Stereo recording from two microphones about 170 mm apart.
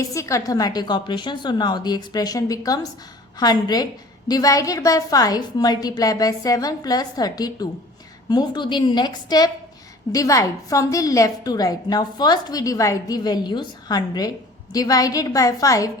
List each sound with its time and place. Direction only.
0.1 s a woman's voice: 20° left (ahead or behind)